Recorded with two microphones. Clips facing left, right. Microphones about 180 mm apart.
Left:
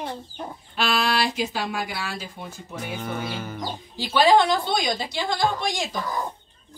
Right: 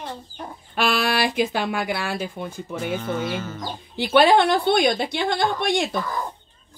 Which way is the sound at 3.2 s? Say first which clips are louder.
Right 4 dB; 15° left (ahead or behind).